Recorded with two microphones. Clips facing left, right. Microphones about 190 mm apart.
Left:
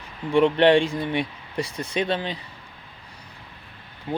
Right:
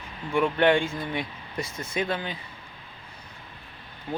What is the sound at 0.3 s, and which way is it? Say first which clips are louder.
Speech: left 5 dB; 30° left (ahead or behind).